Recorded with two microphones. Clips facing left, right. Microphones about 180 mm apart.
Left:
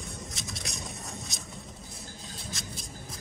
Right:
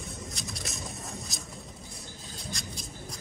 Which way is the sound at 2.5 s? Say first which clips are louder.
Right 2 dB; centre (ahead or behind).